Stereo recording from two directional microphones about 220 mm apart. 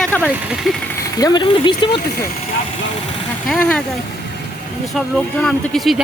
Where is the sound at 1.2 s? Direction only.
20° left (ahead or behind).